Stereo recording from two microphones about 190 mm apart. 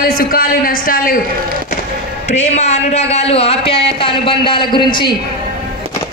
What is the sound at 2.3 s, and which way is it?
Speech, 35° left (ahead or behind).